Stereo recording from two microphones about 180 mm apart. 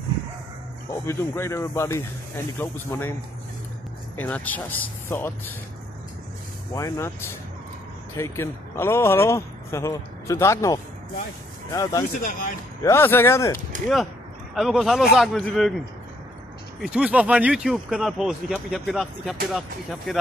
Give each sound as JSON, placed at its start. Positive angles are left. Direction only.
{"t": 1.0, "sound": "speech", "side_deg": 15}
{"t": 4.2, "sound": "speech", "side_deg": 10}
{"t": 6.7, "sound": "speech", "side_deg": 15}
{"t": 12.2, "sound": "speech", "side_deg": 50}
{"t": 12.8, "sound": "speech", "side_deg": 15}
{"t": 14.5, "sound": "speech", "side_deg": 0}
{"t": 16.8, "sound": "speech", "side_deg": -5}